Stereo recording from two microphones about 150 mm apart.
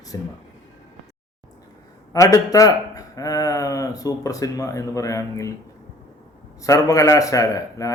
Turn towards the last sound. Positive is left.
turn(degrees=20)  # may be behind; listen again after turning